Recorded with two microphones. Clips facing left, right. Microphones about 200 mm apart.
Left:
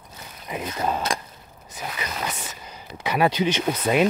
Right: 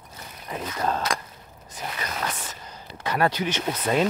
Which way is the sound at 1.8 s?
10° left (ahead or behind).